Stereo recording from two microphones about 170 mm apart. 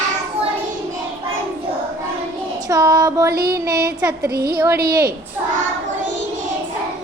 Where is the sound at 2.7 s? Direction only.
20° right (ahead or behind).